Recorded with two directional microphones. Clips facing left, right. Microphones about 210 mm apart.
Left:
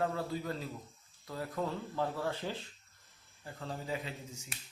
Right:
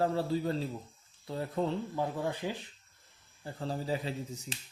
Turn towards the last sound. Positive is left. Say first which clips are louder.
# right 7 dB
turn(degrees=-35)  # may be behind; listen again after turning